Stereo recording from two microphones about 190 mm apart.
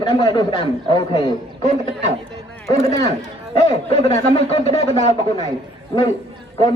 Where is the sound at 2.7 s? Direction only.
20° left (ahead or behind).